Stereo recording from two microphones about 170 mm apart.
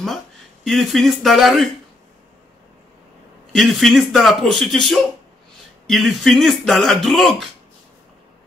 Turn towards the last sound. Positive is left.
turn(degrees=0)  # may be behind; listen again after turning